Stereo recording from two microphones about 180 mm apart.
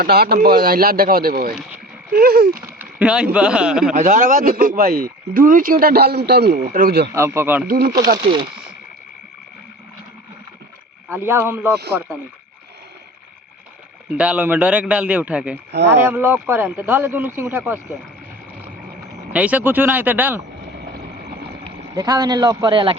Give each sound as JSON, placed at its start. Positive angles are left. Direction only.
{"t": 0.0, "sound": "speech", "side_deg": -60}
{"t": 2.5, "sound": "a man's voice", "side_deg": -10}
{"t": 3.9, "sound": "speech", "side_deg": -45}
{"t": 7.1, "sound": "speech", "side_deg": -15}
{"t": 7.7, "sound": "speech", "side_deg": -55}
{"t": 8.2, "sound": "a man's voice", "side_deg": -25}
{"t": 11.1, "sound": "speech", "side_deg": -10}
{"t": 14.2, "sound": "speech", "side_deg": -5}
{"t": 19.3, "sound": "speech", "side_deg": -10}
{"t": 21.9, "sound": "a man's voice", "side_deg": -20}